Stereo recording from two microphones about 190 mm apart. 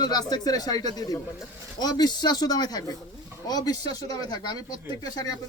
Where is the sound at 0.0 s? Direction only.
20° left (ahead or behind).